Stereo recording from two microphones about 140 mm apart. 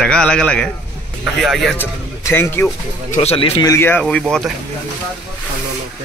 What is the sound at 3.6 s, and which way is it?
Speech, 20° left (ahead or behind).